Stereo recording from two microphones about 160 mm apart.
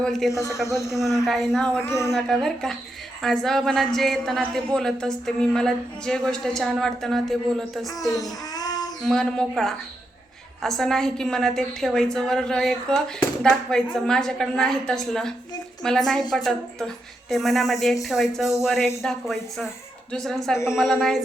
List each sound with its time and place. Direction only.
0.0 s a woman's voice: centre (ahead or behind)
0.3 s a man's voice: 20° left (ahead or behind)
1.2 s speech: centre (ahead or behind); by 2.1 s 15° left (ahead or behind)
2.1 s a woman's voice: centre (ahead or behind)
8.1 s child singing: 25° left (ahead or behind)
9.0 s a woman's voice: 5° left (ahead or behind)